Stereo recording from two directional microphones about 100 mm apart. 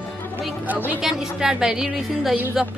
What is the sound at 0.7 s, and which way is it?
Speech, 15° right (ahead or behind).